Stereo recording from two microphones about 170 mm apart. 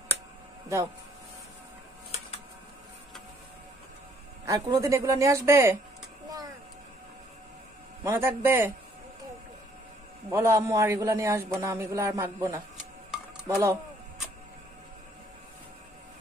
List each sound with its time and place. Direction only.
4.5 s speech: 20° right (ahead or behind)
8.0 s a man's voice: 15° right (ahead or behind)
10.3 s a man's voice: 15° right (ahead or behind)
13.1 s music: 5° right (ahead or behind)